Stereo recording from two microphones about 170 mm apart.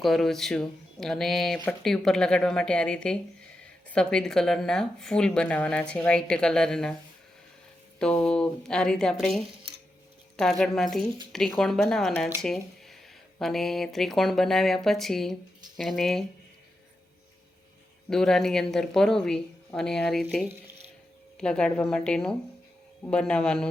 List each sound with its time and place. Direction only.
0.0 s speech: centre (ahead or behind)
7.9 s speech: 5° left (ahead or behind)
9.5 s a sound: 75° right (ahead or behind)
10.3 s speech: centre (ahead or behind)
12.4 s a sound: centre (ahead or behind)
13.4 s speech: centre (ahead or behind)
18.1 s speech: 5° left (ahead or behind)
21.3 s speech: 5° left (ahead or behind)